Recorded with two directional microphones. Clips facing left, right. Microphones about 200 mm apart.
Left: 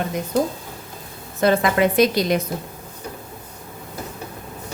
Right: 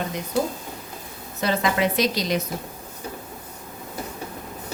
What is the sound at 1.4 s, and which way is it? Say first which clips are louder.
A woman's voice: left 5 dB; 50° left (ahead or behind).